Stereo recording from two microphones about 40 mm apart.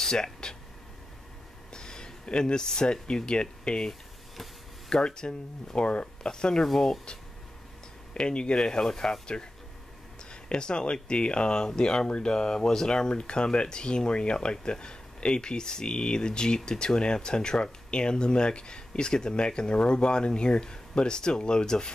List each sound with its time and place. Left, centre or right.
0.0 s a sound: centre
1.7 s speech: centre
6.6 s speech: centre
8.1 s speech: left
8.8 s speech: centre